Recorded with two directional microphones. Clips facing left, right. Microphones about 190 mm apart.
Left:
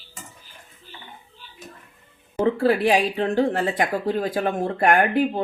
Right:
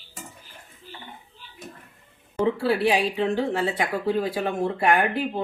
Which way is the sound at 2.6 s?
50° left (ahead or behind).